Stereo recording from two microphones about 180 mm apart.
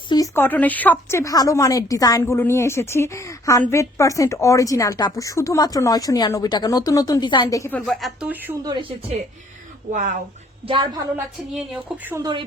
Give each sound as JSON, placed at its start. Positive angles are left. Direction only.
{"t": 0.1, "sound": "a woman's voice", "side_deg": 15}
{"t": 7.8, "sound": "speech", "side_deg": 0}
{"t": 8.6, "sound": "speech", "side_deg": -25}
{"t": 9.9, "sound": "speech", "side_deg": -45}
{"t": 11.5, "sound": "speech", "side_deg": 0}
{"t": 12.1, "sound": "speech", "side_deg": -20}